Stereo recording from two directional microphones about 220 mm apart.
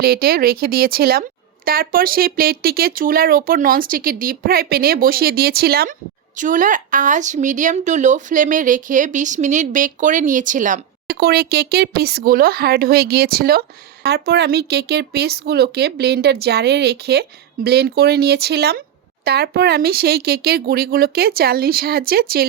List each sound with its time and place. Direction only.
0.0 s speech: 45° right (ahead or behind)